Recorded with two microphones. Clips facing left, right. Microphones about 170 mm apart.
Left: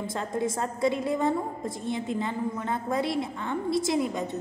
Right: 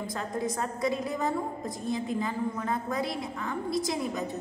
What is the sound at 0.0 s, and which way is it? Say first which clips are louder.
A woman's voice: left 3 dB; 25° left (ahead or behind).